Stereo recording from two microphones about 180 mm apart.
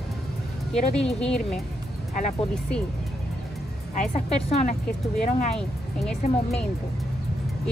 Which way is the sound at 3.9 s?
40° left (ahead or behind).